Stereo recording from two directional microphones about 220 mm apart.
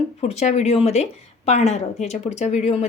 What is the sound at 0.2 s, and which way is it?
A woman's voice, 30° left (ahead or behind).